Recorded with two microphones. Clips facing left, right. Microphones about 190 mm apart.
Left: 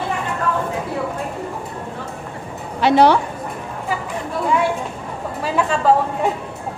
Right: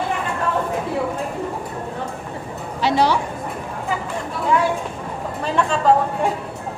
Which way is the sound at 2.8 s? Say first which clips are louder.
Left 5 dB; 60° left (ahead or behind).